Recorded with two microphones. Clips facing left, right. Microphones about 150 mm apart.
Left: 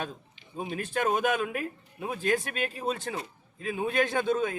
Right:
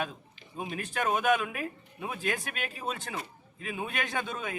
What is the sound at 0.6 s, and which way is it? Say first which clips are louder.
Speech: left 3 dB; 30° left (ahead or behind).